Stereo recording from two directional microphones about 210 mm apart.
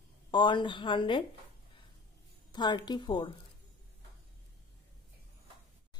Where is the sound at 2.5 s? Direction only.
20° left (ahead or behind).